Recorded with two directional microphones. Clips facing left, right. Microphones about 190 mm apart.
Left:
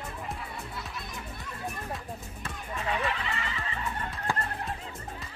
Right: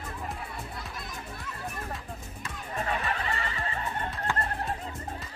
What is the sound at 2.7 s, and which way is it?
Music, 45° right (ahead or behind).